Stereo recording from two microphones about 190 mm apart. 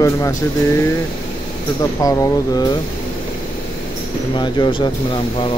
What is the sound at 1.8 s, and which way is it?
Speech, 20° left (ahead or behind).